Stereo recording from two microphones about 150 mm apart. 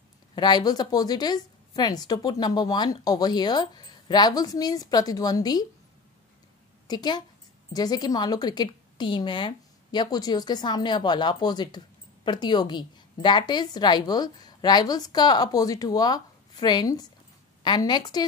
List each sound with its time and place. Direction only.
0.4 s speech: 30° left (ahead or behind)
6.9 s speech: 30° left (ahead or behind)